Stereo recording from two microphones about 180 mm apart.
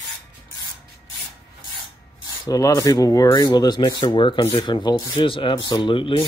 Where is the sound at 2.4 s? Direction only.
20° left (ahead or behind).